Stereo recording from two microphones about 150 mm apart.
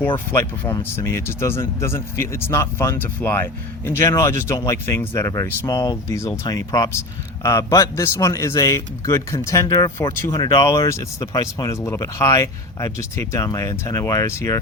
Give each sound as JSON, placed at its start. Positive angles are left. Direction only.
{"t": 0.3, "sound": "speech", "side_deg": 15}